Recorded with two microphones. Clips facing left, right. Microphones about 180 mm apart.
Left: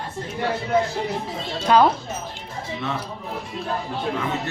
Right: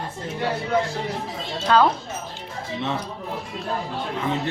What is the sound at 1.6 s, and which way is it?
Speech, 15° left (ahead or behind).